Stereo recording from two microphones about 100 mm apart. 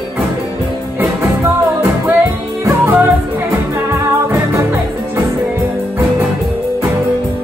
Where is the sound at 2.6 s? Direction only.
25° right (ahead or behind).